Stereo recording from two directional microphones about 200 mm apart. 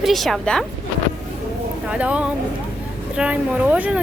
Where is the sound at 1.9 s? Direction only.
5° right (ahead or behind).